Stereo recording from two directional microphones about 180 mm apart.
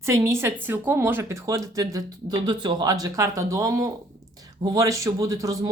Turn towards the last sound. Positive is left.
turn(degrees=-20)  # may be behind; listen again after turning